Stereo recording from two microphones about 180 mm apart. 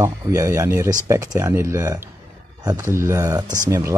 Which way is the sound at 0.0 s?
15° right (ahead or behind).